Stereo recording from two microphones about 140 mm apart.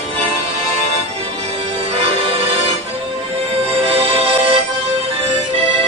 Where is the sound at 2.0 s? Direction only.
45° right (ahead or behind).